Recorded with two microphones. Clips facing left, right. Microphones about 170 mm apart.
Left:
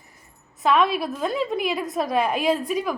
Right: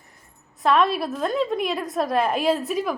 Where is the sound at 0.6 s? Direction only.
Centre (ahead or behind).